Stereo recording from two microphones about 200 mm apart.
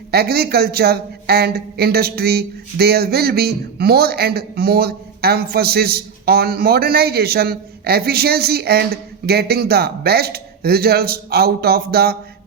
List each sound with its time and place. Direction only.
0.1 s a man's voice: 50° right (ahead or behind)